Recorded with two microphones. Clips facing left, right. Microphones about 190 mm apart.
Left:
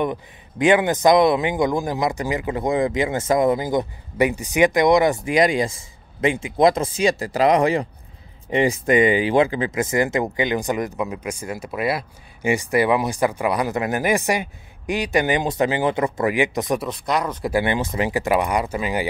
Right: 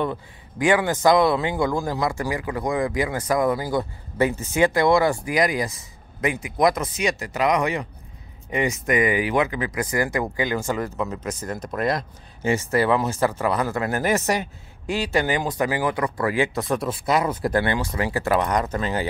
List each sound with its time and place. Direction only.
0.0 s a man's voice: 20° left (ahead or behind)
16.8 s speech: 5° right (ahead or behind)
17.5 s speech: 15° left (ahead or behind)